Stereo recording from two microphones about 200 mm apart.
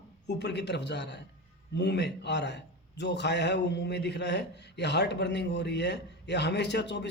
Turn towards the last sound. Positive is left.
turn(degrees=60)  # may be behind; listen again after turning